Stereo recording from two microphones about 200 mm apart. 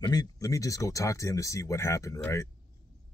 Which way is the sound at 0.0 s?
20° left (ahead or behind).